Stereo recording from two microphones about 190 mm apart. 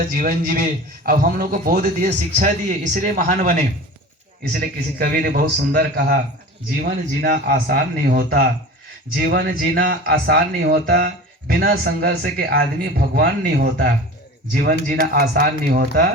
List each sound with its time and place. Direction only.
0.1 s a man's voice: 45° right (ahead or behind)
7.2 s a man's voice: 50° right (ahead or behind)